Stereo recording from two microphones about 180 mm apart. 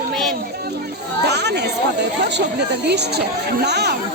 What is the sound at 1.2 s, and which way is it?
Speech, 70° right (ahead or behind).